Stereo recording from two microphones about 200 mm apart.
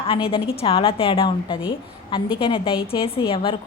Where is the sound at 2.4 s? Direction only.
25° left (ahead or behind).